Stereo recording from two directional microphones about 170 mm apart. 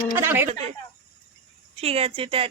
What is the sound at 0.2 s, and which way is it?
Speech, 15° right (ahead or behind).